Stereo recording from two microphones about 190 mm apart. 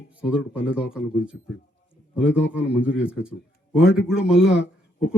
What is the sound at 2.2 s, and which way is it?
Speech, 70° left (ahead or behind).